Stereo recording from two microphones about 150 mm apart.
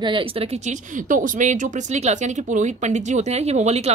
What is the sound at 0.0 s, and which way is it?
Speech, 35° right (ahead or behind).